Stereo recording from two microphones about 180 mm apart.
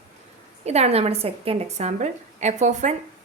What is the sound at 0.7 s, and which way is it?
A woman's voice, 35° right (ahead or behind).